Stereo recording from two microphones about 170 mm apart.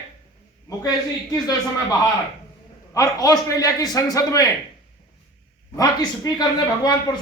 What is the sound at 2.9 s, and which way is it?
Speech, 20° left (ahead or behind).